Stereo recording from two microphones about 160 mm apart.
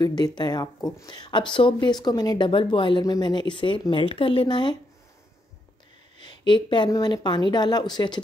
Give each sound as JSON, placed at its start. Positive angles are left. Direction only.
{"t": 0.0, "sound": "speech", "side_deg": 25}
{"t": 6.2, "sound": "speech", "side_deg": 30}